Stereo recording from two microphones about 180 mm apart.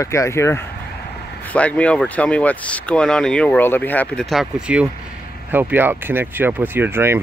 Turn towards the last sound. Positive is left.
turn(degrees=-15)  # may be behind; listen again after turning